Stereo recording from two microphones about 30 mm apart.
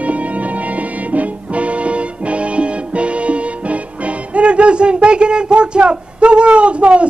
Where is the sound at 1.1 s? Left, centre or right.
Right.